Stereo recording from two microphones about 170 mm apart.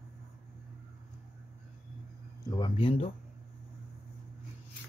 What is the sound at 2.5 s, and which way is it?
Speech, 30° left (ahead or behind).